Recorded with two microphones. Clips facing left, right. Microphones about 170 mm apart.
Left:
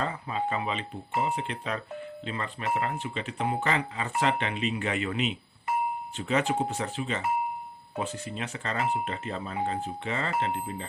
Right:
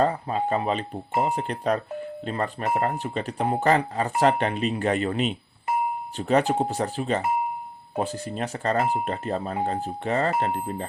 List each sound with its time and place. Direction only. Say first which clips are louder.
0.0 s speech: right 7 dB; 40° right (ahead or behind)